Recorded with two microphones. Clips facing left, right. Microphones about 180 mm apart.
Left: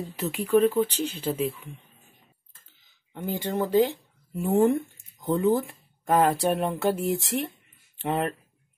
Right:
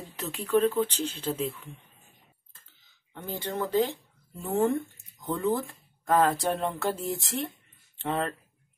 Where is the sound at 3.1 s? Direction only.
20° left (ahead or behind).